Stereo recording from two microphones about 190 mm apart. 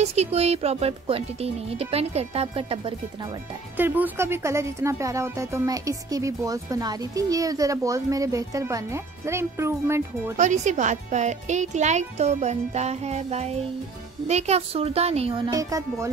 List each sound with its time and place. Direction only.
0.0 s a child's voice: 35° right (ahead or behind)
3.7 s speech: 10° right (ahead or behind)
10.3 s a child's voice: 40° right (ahead or behind); by 16.1 s 15° right (ahead or behind)